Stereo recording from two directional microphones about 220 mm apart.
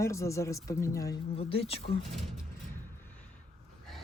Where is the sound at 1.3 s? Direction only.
25° left (ahead or behind).